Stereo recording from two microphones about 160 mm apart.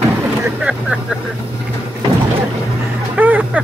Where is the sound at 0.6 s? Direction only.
5° right (ahead or behind).